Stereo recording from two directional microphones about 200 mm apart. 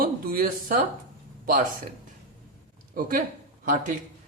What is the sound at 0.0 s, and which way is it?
Speech, 45° right (ahead or behind).